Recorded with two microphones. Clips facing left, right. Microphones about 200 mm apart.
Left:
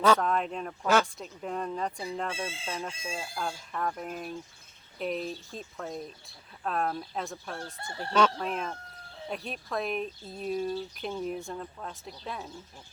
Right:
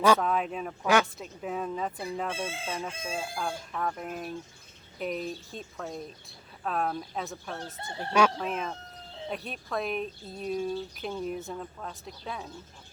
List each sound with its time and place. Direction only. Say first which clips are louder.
0.0 s speech: right 1 dB; 5° right (ahead or behind)
7.6 s chicken: right 1 dB; 20° right (ahead or behind)
8.4 s speech: right 1 dB; centre (ahead or behind)